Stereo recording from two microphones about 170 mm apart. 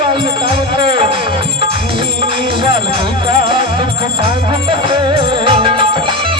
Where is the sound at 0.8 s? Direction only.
30° right (ahead or behind).